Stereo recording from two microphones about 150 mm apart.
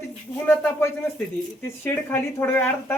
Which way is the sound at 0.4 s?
15° left (ahead or behind).